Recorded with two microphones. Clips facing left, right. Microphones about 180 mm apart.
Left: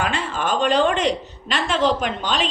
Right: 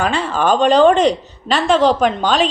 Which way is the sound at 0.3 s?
35° right (ahead or behind).